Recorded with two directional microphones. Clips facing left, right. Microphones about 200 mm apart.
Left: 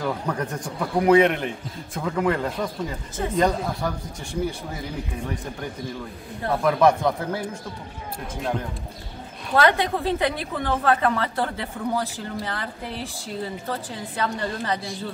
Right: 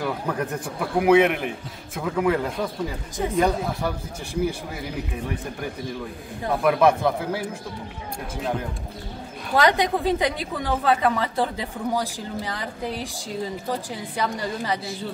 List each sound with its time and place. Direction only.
0.0 s a man's voice: 5° right (ahead or behind)
6.4 s a woman's voice: 10° right (ahead or behind)
9.6 s a woman's voice: 15° right (ahead or behind)